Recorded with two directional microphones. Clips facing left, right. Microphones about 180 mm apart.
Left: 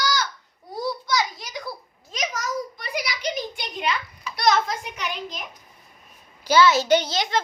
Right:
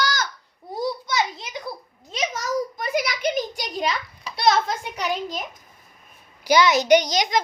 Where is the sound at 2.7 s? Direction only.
45° right (ahead or behind).